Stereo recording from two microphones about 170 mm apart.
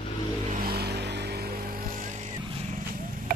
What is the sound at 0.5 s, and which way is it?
Vehicle, 60° right (ahead or behind).